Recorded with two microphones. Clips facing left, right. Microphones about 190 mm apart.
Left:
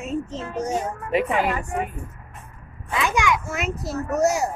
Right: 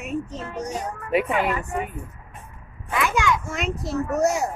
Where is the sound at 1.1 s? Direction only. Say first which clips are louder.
Even; centre (ahead or behind).